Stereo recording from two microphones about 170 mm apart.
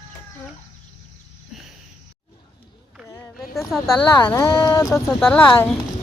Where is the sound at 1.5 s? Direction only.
5° right (ahead or behind).